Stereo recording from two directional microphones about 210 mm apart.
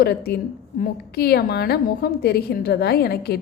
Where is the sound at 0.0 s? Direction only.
50° left (ahead or behind).